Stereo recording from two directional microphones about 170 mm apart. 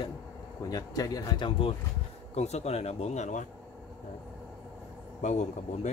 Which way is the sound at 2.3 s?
40° left (ahead or behind).